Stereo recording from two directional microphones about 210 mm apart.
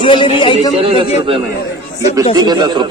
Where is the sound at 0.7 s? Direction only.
25° right (ahead or behind).